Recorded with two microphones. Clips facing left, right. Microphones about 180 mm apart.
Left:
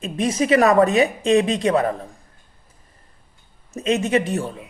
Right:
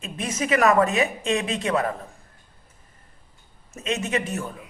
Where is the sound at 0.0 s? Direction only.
35° left (ahead or behind).